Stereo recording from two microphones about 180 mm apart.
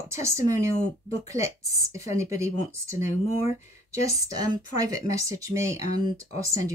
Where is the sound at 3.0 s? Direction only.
35° left (ahead or behind).